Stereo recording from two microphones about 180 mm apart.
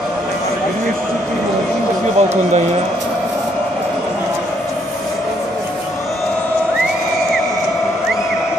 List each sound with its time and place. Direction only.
2.1 s speech: 40° right (ahead or behind)